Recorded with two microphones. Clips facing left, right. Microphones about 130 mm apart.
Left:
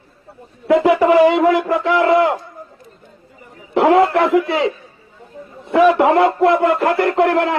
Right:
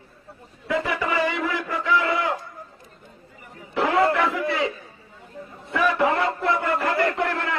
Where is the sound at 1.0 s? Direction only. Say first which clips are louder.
Left 13 dB; 65° left (ahead or behind).